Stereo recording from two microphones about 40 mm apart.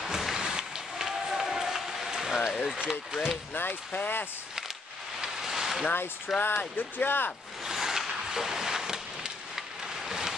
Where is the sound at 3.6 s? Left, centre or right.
Left.